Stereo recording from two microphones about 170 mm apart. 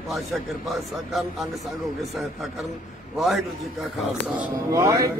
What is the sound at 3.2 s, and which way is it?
Speech, centre (ahead or behind).